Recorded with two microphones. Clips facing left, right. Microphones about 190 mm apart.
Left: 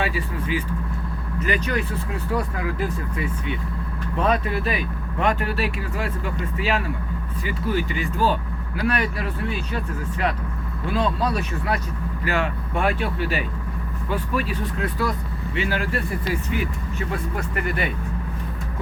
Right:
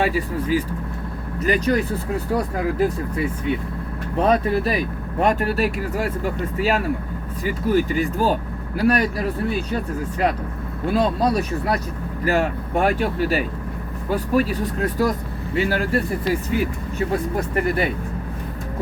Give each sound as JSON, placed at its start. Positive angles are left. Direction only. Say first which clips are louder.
{"t": 0.0, "sound": "speech", "louder": "right 5 dB", "side_deg": -40}
{"t": 17.1, "sound": "speech", "louder": "right 5 dB", "side_deg": -40}